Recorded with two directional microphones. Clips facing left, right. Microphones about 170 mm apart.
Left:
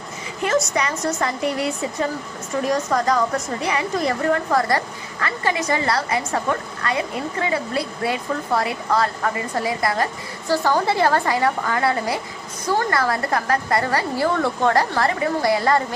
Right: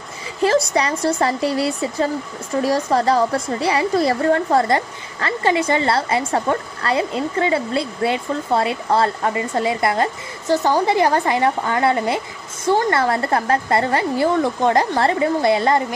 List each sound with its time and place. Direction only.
0.4 s a woman's voice: 30° right (ahead or behind)